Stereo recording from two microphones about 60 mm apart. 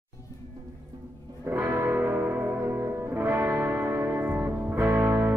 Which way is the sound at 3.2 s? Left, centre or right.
Right.